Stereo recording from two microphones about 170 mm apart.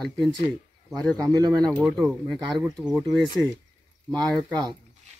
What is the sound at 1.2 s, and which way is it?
Speech, 20° right (ahead or behind).